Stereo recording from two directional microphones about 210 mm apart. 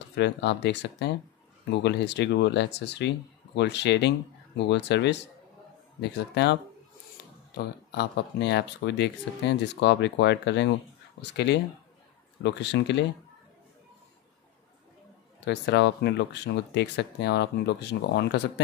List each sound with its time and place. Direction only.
0.1 s speech: 55° left (ahead or behind)
15.4 s speech: 55° left (ahead or behind)